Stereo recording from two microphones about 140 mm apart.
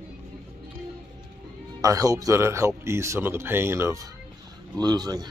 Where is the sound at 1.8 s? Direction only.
25° right (ahead or behind).